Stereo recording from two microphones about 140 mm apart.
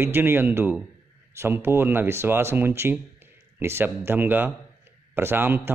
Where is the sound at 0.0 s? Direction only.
15° right (ahead or behind).